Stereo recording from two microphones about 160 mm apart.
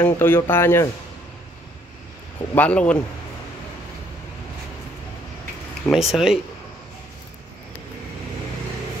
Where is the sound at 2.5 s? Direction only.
10° left (ahead or behind).